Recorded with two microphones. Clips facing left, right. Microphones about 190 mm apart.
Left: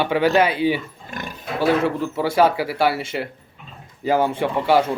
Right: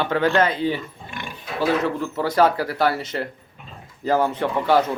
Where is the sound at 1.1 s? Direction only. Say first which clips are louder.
Left 4 dB; 40° left (ahead or behind).